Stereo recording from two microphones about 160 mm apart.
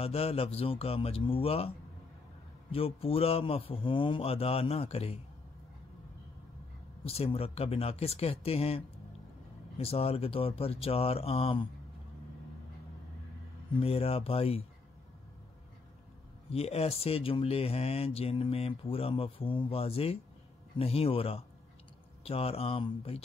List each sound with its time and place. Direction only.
0.0 s speech: 40° left (ahead or behind)
2.7 s speech: 35° left (ahead or behind)
7.1 s speech: 35° left (ahead or behind)
13.7 s speech: 35° left (ahead or behind)
16.5 s speech: 40° left (ahead or behind)